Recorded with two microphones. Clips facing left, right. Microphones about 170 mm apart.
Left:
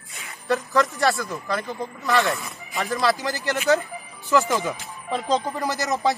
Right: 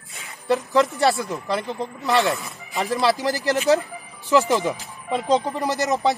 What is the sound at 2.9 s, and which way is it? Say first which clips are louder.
Speech: right 2 dB; 30° right (ahead or behind).